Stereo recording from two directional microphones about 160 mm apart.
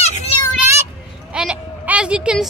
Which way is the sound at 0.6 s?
15° right (ahead or behind).